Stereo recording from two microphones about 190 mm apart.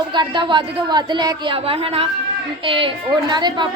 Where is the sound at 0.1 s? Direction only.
25° right (ahead or behind).